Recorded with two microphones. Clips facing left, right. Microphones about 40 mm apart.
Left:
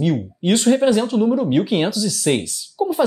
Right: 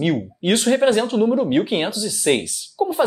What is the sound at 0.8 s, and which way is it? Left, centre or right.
Speech, right.